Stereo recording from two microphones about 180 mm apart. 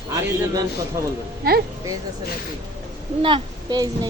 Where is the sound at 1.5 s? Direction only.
55° right (ahead or behind).